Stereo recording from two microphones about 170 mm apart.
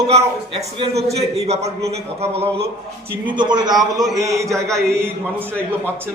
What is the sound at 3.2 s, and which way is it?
A man's voice, 25° right (ahead or behind).